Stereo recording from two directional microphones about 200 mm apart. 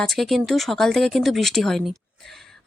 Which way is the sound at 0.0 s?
Centre (ahead or behind).